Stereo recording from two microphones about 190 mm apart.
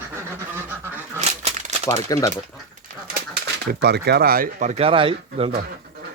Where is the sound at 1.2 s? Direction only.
35° right (ahead or behind).